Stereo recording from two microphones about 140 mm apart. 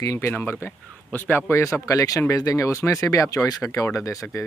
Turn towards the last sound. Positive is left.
turn(degrees=20)  # may be behind; listen again after turning